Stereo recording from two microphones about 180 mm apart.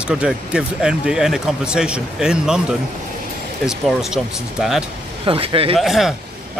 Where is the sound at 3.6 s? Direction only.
Centre (ahead or behind).